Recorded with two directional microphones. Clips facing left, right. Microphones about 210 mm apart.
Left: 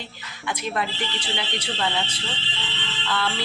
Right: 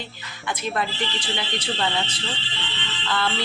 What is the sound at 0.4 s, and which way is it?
Speech, 10° left (ahead or behind).